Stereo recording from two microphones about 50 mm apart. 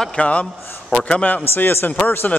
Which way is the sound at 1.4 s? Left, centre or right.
Left.